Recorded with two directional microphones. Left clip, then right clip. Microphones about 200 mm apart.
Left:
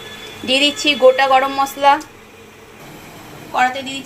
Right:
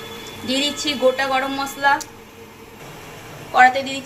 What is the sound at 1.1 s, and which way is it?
Speech, 35° left (ahead or behind).